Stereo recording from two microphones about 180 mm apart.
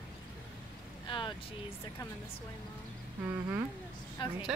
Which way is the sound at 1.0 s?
25° left (ahead or behind).